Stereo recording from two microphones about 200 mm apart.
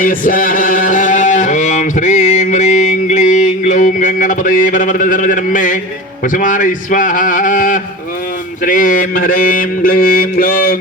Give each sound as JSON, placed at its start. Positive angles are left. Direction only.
{"t": 0.0, "sound": "music", "side_deg": 45}
{"t": 6.2, "sound": "speech", "side_deg": 40}
{"t": 8.6, "sound": "mantra", "side_deg": 45}